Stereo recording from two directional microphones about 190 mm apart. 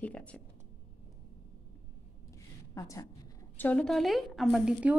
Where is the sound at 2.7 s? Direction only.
15° left (ahead or behind).